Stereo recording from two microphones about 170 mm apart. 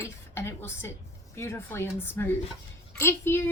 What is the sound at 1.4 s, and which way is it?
A woman's voice, 15° left (ahead or behind).